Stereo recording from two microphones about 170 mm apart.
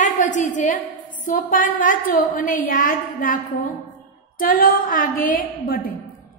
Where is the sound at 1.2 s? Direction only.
50° left (ahead or behind).